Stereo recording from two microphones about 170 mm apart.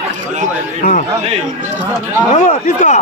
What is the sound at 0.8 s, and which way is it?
Speech, 40° left (ahead or behind).